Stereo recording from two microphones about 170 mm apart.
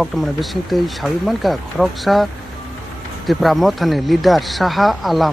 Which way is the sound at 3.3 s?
Centre (ahead or behind).